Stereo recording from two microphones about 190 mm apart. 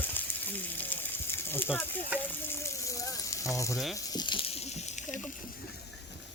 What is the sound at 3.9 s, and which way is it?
Snake, 20° left (ahead or behind).